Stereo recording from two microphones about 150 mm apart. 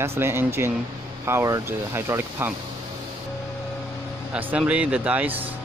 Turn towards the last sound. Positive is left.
turn(degrees=-10)  # may be behind; listen again after turning